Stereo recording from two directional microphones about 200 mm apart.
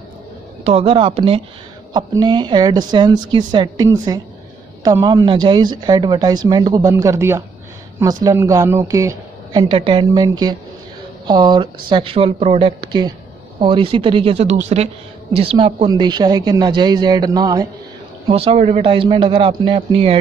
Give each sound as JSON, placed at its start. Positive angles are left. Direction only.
{"t": 0.7, "sound": "a woman's voice", "side_deg": -30}
{"t": 18.3, "sound": "speech", "side_deg": -30}